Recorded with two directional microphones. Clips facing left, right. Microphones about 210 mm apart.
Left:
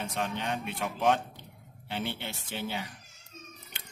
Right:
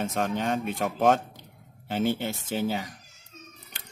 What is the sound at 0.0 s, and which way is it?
Speech, 45° right (ahead or behind).